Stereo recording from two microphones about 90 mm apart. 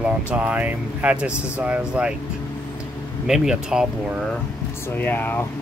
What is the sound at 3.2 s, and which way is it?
Speech, 5° right (ahead or behind).